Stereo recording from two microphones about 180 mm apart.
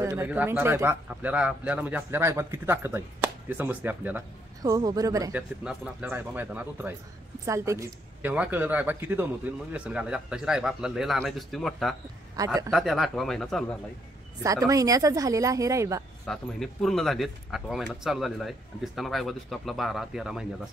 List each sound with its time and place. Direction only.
0.0 s speech: 15° right (ahead or behind)
4.6 s speech: 20° right (ahead or behind)
5.3 s speech: 5° right (ahead or behind)
12.4 s speech: 20° right (ahead or behind)
12.7 s speech: centre (ahead or behind)
14.4 s speech: 20° right (ahead or behind)
16.3 s speech: centre (ahead or behind)